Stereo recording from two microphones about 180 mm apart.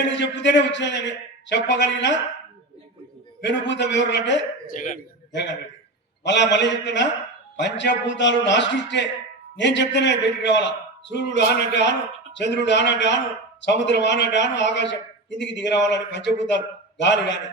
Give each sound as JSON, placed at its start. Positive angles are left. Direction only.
{"t": 0.0, "sound": "a man's voice", "side_deg": 80}
{"t": 3.4, "sound": "a man's voice", "side_deg": 75}
{"t": 4.6, "sound": "a man's voice", "side_deg": 50}
{"t": 5.3, "sound": "a man's voice", "side_deg": 75}